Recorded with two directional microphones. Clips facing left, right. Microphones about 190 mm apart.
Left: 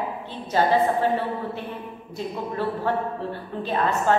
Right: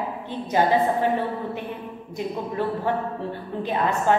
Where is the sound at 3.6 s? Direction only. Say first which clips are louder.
Even; 15° right (ahead or behind).